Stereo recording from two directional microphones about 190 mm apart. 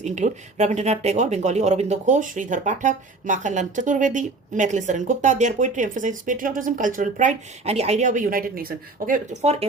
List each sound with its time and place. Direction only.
0.0 s speech: 40° right (ahead or behind)